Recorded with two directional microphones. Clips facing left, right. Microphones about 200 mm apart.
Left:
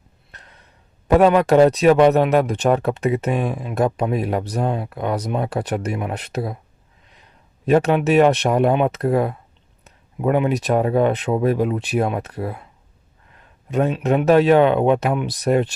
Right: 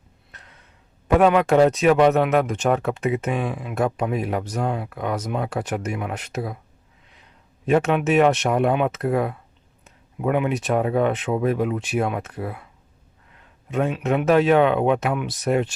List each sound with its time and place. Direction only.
1.0 s speech: 35° left (ahead or behind)
7.6 s speech: 35° left (ahead or behind)
13.7 s speech: 35° left (ahead or behind)